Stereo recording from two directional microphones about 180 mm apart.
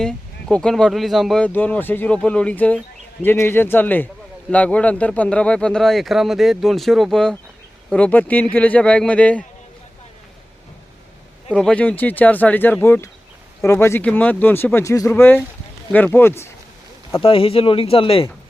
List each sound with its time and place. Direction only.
0.0 s speech: 5° left (ahead or behind)
11.5 s speech: 5° left (ahead or behind)
17.2 s speech: 30° left (ahead or behind)